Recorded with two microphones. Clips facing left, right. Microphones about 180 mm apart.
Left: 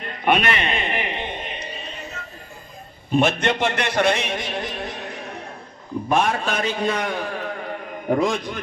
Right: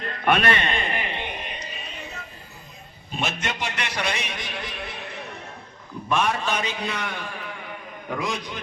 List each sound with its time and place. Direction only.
0.2 s a man's voice: 10° left (ahead or behind)
0.6 s music: 20° left (ahead or behind)
3.1 s a man's voice: 55° left (ahead or behind)
6.1 s a man's voice: 45° left (ahead or behind)